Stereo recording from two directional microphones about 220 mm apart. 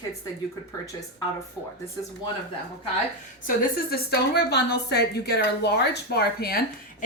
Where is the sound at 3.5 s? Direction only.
45° left (ahead or behind).